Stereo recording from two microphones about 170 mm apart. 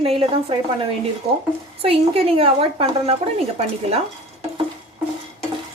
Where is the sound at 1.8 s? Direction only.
35° right (ahead or behind).